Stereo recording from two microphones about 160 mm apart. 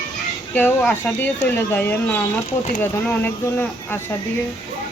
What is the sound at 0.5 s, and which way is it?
Speech, 10° left (ahead or behind).